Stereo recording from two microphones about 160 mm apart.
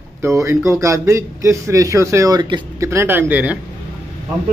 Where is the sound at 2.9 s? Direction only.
15° right (ahead or behind).